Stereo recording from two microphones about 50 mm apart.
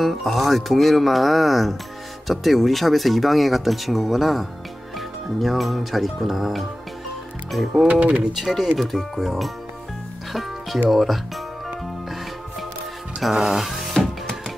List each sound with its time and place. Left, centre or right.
0.0 s speech: centre
7.7 s speech: right
8.4 s speech: centre
10.9 s speech: centre
13.2 s speech: centre